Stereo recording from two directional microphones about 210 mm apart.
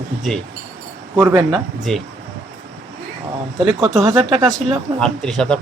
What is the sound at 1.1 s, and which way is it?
Speech, 20° right (ahead or behind).